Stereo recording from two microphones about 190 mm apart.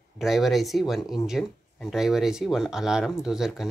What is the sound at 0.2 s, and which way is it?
Speech, centre (ahead or behind).